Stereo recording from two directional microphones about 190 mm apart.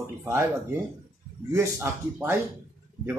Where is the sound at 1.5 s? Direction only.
15° right (ahead or behind).